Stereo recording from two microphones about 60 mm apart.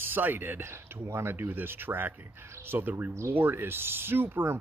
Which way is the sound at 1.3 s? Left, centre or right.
Right.